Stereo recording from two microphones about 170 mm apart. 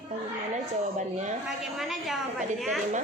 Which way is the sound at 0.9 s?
45° right (ahead or behind).